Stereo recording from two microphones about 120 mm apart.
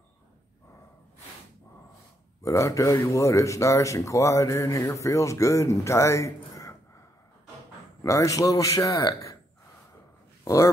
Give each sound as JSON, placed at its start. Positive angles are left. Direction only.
{"t": 2.4, "sound": "speech", "side_deg": 25}
{"t": 8.0, "sound": "speech", "side_deg": 25}
{"t": 10.4, "sound": "speech", "side_deg": 25}